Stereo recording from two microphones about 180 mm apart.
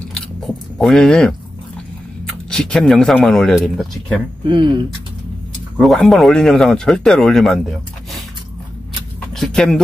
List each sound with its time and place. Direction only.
0.7 s speech: centre (ahead or behind)
2.5 s speech: 5° left (ahead or behind)
4.5 s speech: 25° right (ahead or behind)
5.8 s speech: centre (ahead or behind)
9.3 s speech: 5° left (ahead or behind)